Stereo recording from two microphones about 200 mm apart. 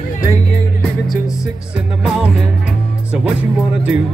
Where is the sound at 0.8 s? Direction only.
Centre (ahead or behind).